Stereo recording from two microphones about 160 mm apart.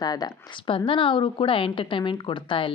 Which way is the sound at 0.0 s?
25° left (ahead or behind).